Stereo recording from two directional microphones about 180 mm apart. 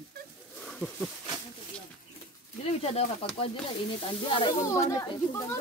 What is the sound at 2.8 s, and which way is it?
Speech, 35° left (ahead or behind).